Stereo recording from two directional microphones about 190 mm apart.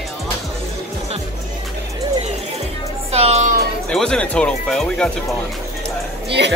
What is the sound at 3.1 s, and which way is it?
Speech, 35° right (ahead or behind).